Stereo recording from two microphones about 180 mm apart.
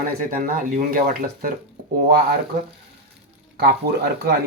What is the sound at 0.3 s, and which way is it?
Speech, 50° right (ahead or behind).